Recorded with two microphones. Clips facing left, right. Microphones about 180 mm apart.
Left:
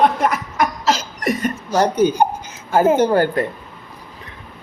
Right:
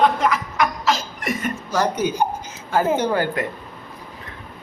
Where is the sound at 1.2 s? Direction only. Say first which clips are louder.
Left 5 dB; 35° left (ahead or behind).